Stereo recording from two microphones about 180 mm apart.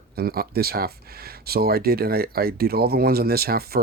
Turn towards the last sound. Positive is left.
turn(degrees=-55)  # may be behind; listen again after turning